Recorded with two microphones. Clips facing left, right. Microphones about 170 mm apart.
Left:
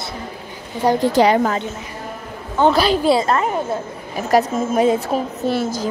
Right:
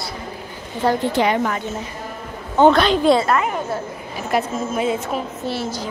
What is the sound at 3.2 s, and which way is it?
A woman's voice, 30° left (ahead or behind).